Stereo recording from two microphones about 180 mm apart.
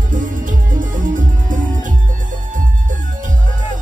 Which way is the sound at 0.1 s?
45° right (ahead or behind).